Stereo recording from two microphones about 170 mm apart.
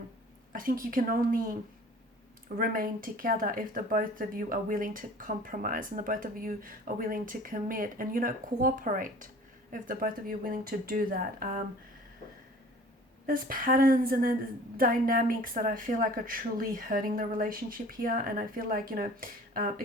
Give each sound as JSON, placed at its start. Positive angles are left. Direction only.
{"t": 0.5, "sound": "speech", "side_deg": -55}
{"t": 2.6, "sound": "speech", "side_deg": -55}
{"t": 13.2, "sound": "speech", "side_deg": -55}